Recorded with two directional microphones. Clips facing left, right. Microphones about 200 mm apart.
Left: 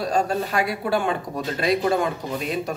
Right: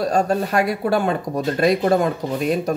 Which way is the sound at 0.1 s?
45° right (ahead or behind).